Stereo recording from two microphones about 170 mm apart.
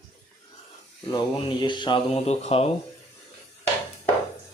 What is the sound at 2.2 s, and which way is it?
Speech, 40° left (ahead or behind).